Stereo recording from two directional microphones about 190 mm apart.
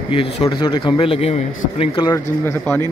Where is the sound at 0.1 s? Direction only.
30° left (ahead or behind).